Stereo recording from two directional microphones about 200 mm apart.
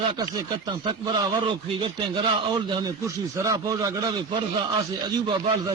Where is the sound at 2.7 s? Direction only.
15° right (ahead or behind).